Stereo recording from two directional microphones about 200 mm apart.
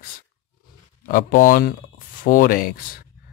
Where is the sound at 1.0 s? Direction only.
45° left (ahead or behind).